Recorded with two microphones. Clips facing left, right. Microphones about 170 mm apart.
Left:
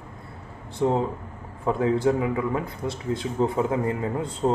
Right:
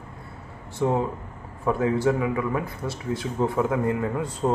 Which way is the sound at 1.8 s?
20° left (ahead or behind).